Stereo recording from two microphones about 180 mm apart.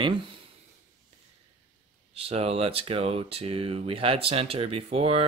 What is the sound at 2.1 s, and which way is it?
Speech, 35° right (ahead or behind).